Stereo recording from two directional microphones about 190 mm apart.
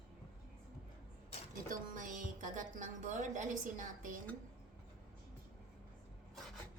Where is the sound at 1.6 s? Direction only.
45° right (ahead or behind).